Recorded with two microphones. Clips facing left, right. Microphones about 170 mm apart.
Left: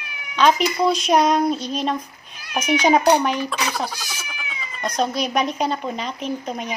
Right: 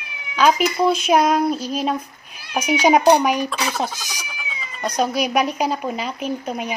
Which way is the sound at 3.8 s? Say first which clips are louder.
Right 2 dB; 20° right (ahead or behind).